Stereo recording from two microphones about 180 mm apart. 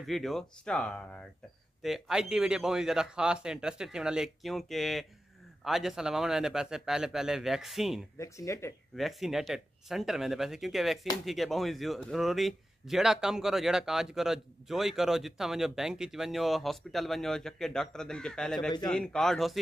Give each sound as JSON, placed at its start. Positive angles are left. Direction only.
{"t": 0.0, "sound": "a man's voice", "side_deg": 0}
{"t": 8.2, "sound": "speech", "side_deg": 15}
{"t": 8.9, "sound": "a man's voice", "side_deg": 0}